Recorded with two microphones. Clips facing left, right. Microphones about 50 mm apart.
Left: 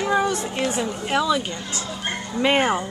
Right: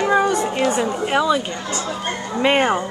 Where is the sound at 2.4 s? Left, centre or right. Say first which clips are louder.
Right 3 dB; centre.